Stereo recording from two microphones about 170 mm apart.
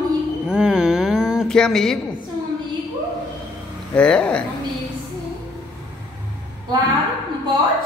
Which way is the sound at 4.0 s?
5° left (ahead or behind).